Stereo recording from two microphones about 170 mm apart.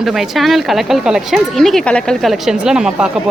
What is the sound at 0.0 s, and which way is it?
Speech, centre (ahead or behind).